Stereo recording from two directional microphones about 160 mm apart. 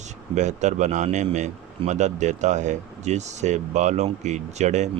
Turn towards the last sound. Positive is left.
turn(degrees=-45)  # may be behind; listen again after turning